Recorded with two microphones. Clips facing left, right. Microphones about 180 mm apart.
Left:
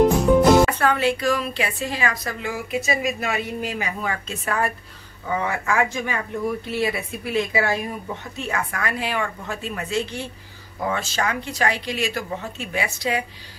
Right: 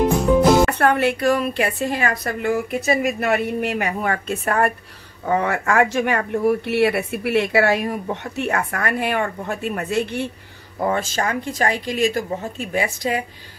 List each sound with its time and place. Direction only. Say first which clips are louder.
0.0 s music: even; centre (ahead or behind)
0.7 s speech: right 3 dB; 60° right (ahead or behind)
10.8 s speech: right 3 dB; 45° right (ahead or behind)